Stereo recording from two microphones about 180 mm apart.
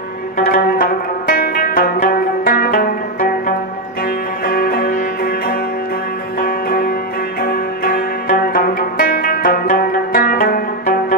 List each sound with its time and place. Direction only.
0.4 s zither: 55° left (ahead or behind)
4.5 s music: 55° left (ahead or behind)
7.4 s zither: 55° left (ahead or behind)